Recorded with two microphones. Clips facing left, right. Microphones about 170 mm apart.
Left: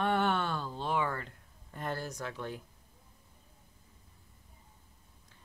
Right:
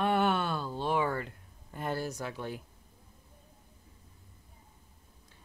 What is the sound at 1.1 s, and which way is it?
Speech, 10° right (ahead or behind).